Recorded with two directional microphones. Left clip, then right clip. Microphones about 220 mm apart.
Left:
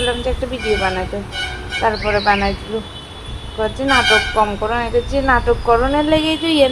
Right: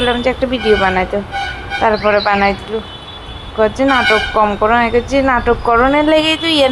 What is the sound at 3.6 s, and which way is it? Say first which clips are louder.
A woman's voice: right 4 dB; 25° right (ahead or behind).